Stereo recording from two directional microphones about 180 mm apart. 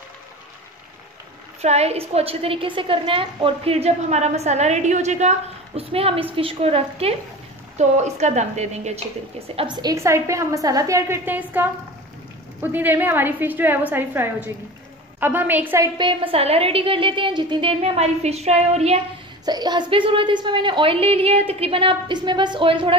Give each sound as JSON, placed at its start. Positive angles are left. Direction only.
{"t": 1.6, "sound": "a woman's voice", "side_deg": -35}
{"t": 9.6, "sound": "a woman's voice", "side_deg": -25}
{"t": 16.0, "sound": "a woman's voice", "side_deg": -30}
{"t": 19.4, "sound": "a woman's voice", "side_deg": -20}